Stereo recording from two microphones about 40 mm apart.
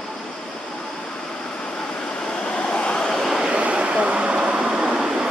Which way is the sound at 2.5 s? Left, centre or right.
Left.